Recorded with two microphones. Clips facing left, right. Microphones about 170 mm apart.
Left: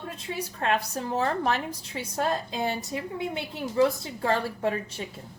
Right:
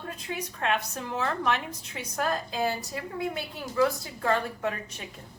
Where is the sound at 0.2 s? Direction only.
30° left (ahead or behind).